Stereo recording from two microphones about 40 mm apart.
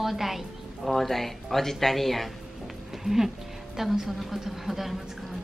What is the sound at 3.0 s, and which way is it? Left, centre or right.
A woman's voice, centre.